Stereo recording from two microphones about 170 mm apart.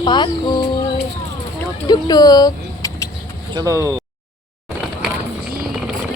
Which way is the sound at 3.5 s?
20° right (ahead or behind).